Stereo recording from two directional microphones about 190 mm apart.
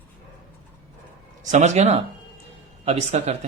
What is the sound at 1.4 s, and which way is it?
Speech, 40° right (ahead or behind).